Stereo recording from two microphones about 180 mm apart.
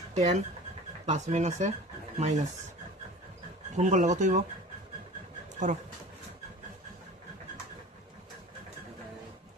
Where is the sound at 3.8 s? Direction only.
40° right (ahead or behind).